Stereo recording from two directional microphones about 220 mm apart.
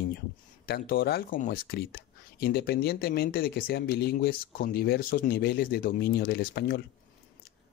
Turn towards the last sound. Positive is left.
turn(degrees=45)  # may be behind; listen again after turning